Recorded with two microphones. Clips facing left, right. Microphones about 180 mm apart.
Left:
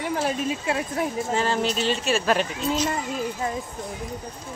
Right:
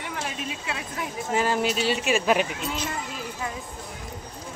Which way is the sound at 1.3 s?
10° right (ahead or behind).